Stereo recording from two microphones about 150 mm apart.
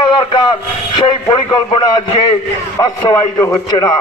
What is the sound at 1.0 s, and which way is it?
A man's voice, 30° left (ahead or behind).